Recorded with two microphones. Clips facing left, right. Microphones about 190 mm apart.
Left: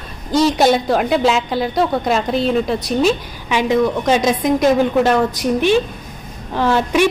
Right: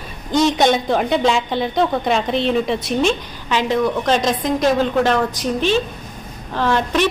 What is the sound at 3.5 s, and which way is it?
A woman's voice, 15° left (ahead or behind).